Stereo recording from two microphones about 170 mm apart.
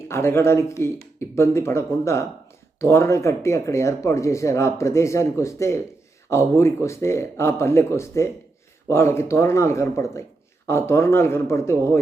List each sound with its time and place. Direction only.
0.1 s speech: 15° left (ahead or behind)